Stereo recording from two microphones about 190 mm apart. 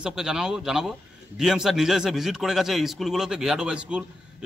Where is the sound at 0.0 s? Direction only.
Centre (ahead or behind).